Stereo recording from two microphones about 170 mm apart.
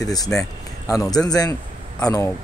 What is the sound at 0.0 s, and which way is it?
A man's voice, 20° left (ahead or behind).